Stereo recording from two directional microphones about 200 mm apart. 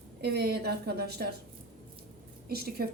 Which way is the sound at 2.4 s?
50° right (ahead or behind).